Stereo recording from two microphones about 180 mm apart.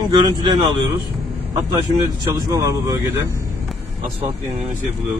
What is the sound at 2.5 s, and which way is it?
Speech, 20° right (ahead or behind).